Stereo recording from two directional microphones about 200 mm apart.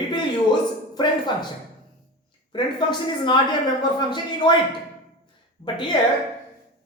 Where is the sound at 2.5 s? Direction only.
20° left (ahead or behind).